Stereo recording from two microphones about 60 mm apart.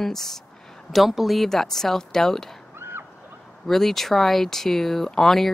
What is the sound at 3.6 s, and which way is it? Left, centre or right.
Speech, centre.